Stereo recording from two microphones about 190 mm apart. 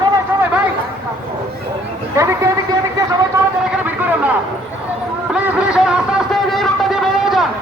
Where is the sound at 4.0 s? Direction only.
10° right (ahead or behind).